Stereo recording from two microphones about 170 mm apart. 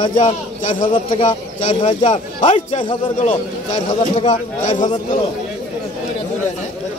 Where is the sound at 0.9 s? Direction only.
25° left (ahead or behind).